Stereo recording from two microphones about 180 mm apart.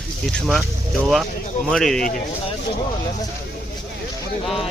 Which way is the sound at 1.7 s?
Centre (ahead or behind).